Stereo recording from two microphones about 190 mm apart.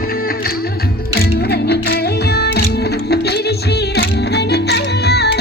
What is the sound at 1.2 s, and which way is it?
Music, 55° left (ahead or behind).